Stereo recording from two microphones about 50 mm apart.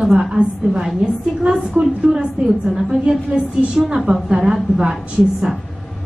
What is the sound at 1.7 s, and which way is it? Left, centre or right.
Speech, right.